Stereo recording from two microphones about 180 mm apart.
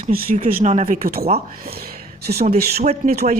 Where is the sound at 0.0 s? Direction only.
50° right (ahead or behind).